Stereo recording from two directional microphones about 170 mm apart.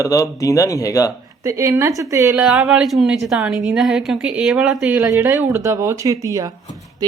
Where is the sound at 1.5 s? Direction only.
15° right (ahead or behind).